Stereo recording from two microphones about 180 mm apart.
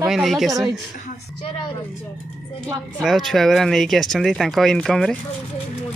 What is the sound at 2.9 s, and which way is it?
Speech, centre (ahead or behind).